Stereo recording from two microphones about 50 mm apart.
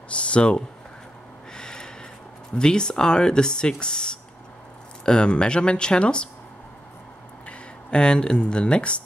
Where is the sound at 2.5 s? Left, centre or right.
Centre.